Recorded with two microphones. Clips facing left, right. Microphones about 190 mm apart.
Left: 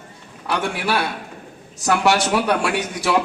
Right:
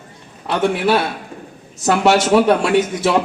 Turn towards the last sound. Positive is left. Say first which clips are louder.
# right 6 dB
turn(degrees=-20)  # may be behind; listen again after turning